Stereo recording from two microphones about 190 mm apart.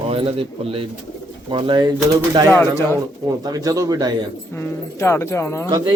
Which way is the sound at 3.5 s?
20° right (ahead or behind).